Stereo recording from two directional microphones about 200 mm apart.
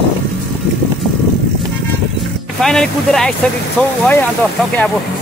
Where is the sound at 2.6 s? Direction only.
5° left (ahead or behind).